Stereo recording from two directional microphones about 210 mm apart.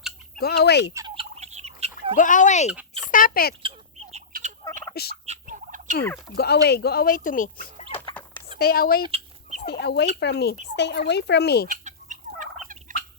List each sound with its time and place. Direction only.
0.3 s speech: 50° left (ahead or behind)
0.9 s fowl: 25° right (ahead or behind)
2.1 s speech: 40° left (ahead or behind)
3.6 s fowl: 25° right (ahead or behind)
4.3 s gobble: 40° right (ahead or behind)
5.2 s turkey: 35° right (ahead or behind)
6.3 s speech: 50° left (ahead or behind)
9.0 s chicken: 30° right (ahead or behind)
9.6 s chicken: 50° left (ahead or behind)
10.2 s speech: 55° left (ahead or behind)
11.7 s fowl: 35° right (ahead or behind)